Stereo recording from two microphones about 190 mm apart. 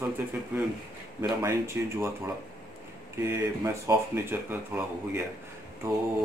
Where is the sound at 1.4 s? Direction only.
15° right (ahead or behind).